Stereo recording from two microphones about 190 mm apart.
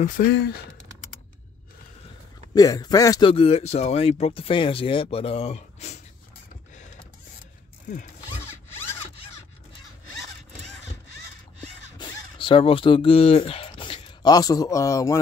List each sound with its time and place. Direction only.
0.2 s speech: 45° left (ahead or behind)
2.5 s speech: 20° left (ahead or behind); by 5.9 s 35° left (ahead or behind)
12.0 s speech: 25° left (ahead or behind)